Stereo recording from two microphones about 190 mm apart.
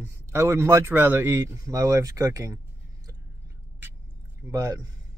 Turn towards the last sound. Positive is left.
turn(degrees=-15)  # may be behind; listen again after turning